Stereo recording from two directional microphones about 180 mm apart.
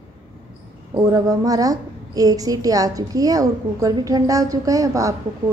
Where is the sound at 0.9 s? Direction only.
20° right (ahead or behind).